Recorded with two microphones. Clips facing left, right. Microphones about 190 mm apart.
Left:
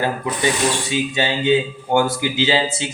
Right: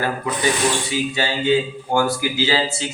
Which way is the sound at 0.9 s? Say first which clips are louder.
Left 2 dB; 20° left (ahead or behind).